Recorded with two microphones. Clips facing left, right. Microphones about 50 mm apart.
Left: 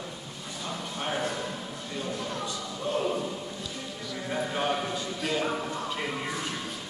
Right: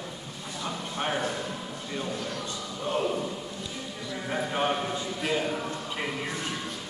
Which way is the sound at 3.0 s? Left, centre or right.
Centre.